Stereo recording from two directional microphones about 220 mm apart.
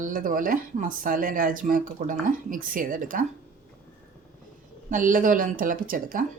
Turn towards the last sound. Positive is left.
turn(degrees=-40)  # may be behind; listen again after turning